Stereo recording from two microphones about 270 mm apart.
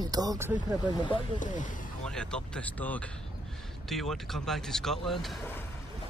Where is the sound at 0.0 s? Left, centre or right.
Centre.